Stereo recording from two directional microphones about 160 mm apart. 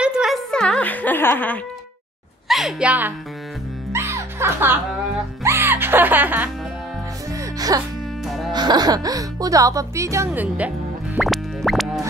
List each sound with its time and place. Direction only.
0.0 s a sound: 5° right (ahead or behind); by 1.6 s 10° left (ahead or behind)
2.4 s a woman's voice: centre (ahead or behind)
3.9 s music: 15° right (ahead or behind)
7.3 s music: 25° right (ahead or behind)
8.5 s speech: 25° right (ahead or behind); by 10.7 s 10° right (ahead or behind)
11.1 s music: centre (ahead or behind)